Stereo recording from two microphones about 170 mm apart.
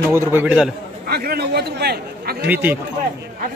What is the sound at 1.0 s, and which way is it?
Chatter, 65° right (ahead or behind).